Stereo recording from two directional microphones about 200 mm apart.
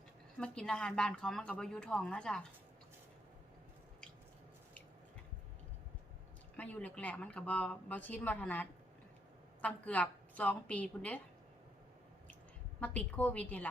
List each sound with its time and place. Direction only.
0.3 s a woman's voice: 5° left (ahead or behind)
6.6 s speech: 5° left (ahead or behind)
12.8 s speech: 5° left (ahead or behind)